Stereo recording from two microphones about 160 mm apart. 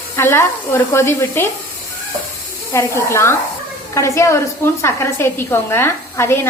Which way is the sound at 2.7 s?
20° left (ahead or behind).